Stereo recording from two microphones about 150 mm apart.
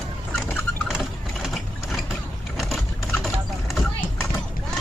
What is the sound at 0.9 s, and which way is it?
Vehicle, 5° right (ahead or behind).